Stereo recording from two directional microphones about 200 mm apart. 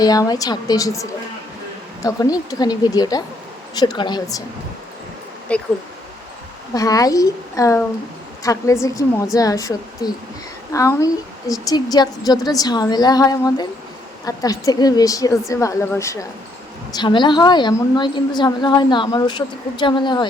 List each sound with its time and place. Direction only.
0.0 s a woman's voice: 20° left (ahead or behind)
5.5 s a woman's voice: 5° left (ahead or behind)
6.7 s a woman's voice: 15° left (ahead or behind)